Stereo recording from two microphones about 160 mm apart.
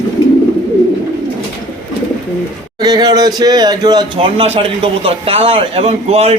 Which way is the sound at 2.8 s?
25° right (ahead or behind).